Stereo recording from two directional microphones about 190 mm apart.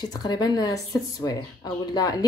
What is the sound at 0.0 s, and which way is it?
Speech, 20° left (ahead or behind).